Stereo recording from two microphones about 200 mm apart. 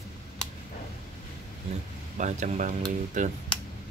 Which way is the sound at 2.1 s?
35° right (ahead or behind).